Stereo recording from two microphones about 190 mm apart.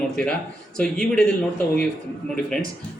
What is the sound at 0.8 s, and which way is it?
Speech, 5° left (ahead or behind).